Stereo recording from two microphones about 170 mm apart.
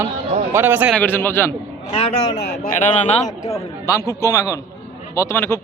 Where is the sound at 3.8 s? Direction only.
20° left (ahead or behind).